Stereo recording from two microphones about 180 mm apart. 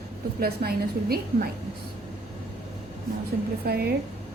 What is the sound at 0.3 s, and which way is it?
A woman's voice, 60° right (ahead or behind).